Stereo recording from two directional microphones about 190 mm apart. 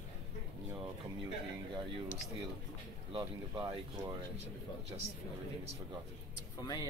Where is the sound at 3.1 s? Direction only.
20° right (ahead or behind).